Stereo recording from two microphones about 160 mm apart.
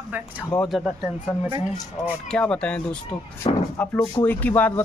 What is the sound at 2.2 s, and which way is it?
Speech, 5° left (ahead or behind).